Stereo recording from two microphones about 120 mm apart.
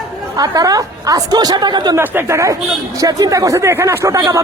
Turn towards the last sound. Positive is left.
turn(degrees=-25)  # may be behind; listen again after turning